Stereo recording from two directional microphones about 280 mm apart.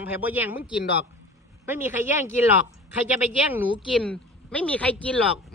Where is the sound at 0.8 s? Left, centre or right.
Left.